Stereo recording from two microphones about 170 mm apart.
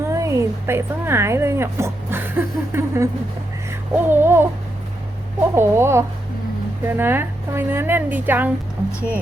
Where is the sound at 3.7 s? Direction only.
15° right (ahead or behind).